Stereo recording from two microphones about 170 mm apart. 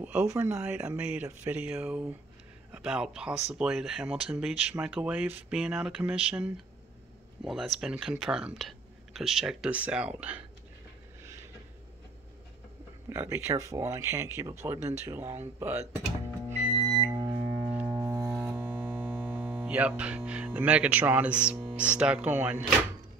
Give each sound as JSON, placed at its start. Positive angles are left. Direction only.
{"t": 0.0, "sound": "speech", "side_deg": -5}
{"t": 13.1, "sound": "speech", "side_deg": -15}
{"t": 17.0, "sound": "a sound", "side_deg": -20}
{"t": 18.3, "sound": "mains hum", "side_deg": -10}
{"t": 21.7, "sound": "speech", "side_deg": -5}